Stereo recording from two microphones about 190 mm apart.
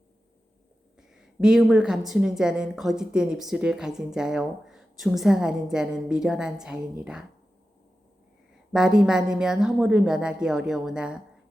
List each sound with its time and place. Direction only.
0.9 s a woman's voice: 5° right (ahead or behind)
8.7 s a woman's voice: 5° right (ahead or behind)